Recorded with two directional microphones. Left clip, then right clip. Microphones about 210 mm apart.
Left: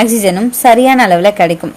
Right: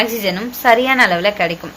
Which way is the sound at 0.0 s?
50° left (ahead or behind).